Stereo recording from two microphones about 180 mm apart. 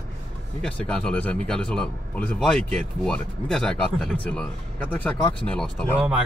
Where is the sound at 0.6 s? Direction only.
5° left (ahead or behind).